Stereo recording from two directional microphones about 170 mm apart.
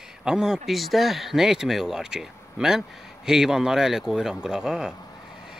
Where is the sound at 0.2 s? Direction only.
5° right (ahead or behind).